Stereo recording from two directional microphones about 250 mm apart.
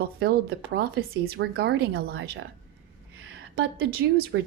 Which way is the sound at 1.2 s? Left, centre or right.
Right.